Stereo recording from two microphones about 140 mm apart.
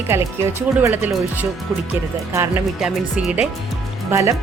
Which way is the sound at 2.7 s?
Centre (ahead or behind).